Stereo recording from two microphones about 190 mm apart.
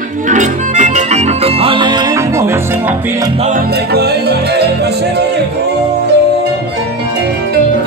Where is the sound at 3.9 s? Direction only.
60° right (ahead or behind).